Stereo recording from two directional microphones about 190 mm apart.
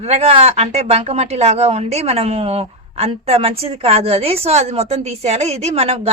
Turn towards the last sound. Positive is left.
turn(degrees=-35)  # may be behind; listen again after turning